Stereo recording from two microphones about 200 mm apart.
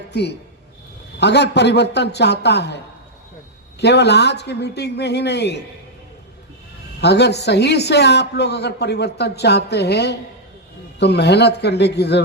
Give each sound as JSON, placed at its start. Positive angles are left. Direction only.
{"t": 0.1, "sound": "speech", "side_deg": 55}
{"t": 7.0, "sound": "speech", "side_deg": 55}